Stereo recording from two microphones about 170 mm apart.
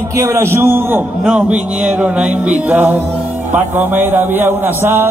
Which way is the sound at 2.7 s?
10° right (ahead or behind).